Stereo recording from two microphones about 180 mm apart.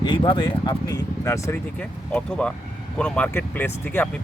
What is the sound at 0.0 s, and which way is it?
Speech, 25° left (ahead or behind).